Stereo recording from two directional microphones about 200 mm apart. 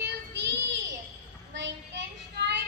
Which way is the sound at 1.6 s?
60° right (ahead or behind).